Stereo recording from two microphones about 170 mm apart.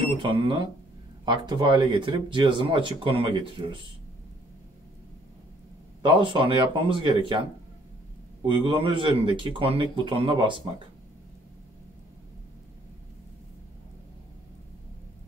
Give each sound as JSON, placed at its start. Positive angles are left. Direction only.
{"t": 0.2, "sound": "speech", "side_deg": -30}
{"t": 6.0, "sound": "speech", "side_deg": -30}
{"t": 8.5, "sound": "speech", "side_deg": -30}